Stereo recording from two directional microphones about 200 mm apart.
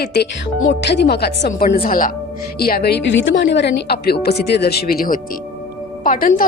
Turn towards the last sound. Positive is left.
turn(degrees=45)  # may be behind; listen again after turning